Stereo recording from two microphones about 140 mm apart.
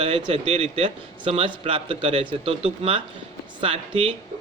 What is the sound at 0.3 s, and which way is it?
A man's voice, 45° right (ahead or behind).